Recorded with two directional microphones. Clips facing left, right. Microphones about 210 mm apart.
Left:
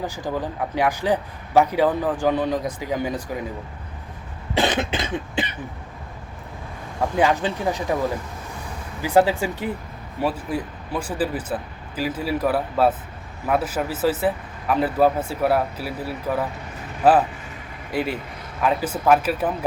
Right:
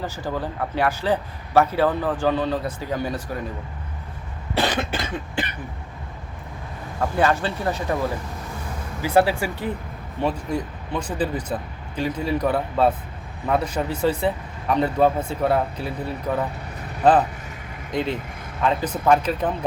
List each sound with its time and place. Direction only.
0.0 s a man's voice: 15° left (ahead or behind)
4.5 s cough: 20° left (ahead or behind)
7.0 s a man's voice: 15° left (ahead or behind)
9.0 s a man's voice: 15° left (ahead or behind)